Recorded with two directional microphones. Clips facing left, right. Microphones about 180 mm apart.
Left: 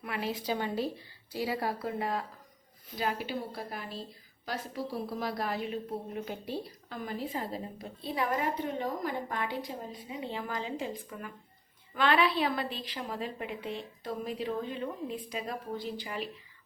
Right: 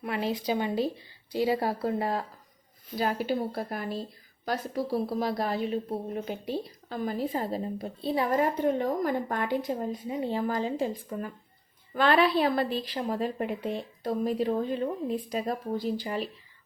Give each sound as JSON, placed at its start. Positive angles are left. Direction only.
{"t": 0.0, "sound": "a woman's voice", "side_deg": -30}
{"t": 0.4, "sound": "a woman's voice", "side_deg": -15}
{"t": 5.2, "sound": "a woman's voice", "side_deg": -30}
{"t": 6.2, "sound": "speech", "side_deg": -15}
{"t": 6.8, "sound": "a woman's voice", "side_deg": -40}
{"t": 8.6, "sound": "a woman's voice", "side_deg": -50}